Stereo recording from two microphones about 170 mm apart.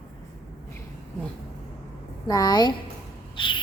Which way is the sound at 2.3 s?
25° left (ahead or behind).